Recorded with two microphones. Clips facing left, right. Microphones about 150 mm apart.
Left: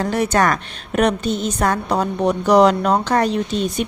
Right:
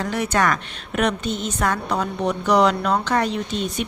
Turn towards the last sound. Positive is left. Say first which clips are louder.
# left 4 dB
turn(degrees=40)  # may be behind; listen again after turning